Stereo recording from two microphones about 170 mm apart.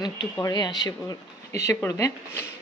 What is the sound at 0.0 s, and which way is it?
Speech, 25° left (ahead or behind).